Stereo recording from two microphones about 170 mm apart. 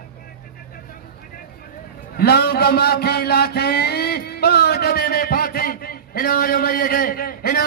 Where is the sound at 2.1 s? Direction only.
70° left (ahead or behind).